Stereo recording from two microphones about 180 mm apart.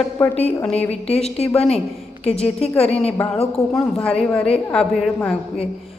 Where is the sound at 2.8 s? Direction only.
35° left (ahead or behind).